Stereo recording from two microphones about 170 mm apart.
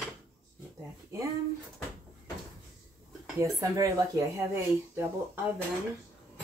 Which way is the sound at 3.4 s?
20° right (ahead or behind).